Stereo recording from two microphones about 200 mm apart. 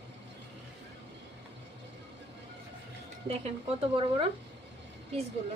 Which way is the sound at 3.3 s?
30° right (ahead or behind).